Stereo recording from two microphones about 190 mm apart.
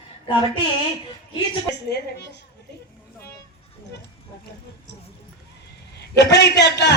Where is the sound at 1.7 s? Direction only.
60° left (ahead or behind).